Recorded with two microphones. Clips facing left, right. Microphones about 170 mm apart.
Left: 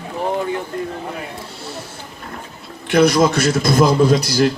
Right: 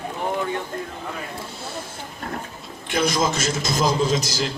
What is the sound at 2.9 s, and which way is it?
A man's voice, 60° left (ahead or behind).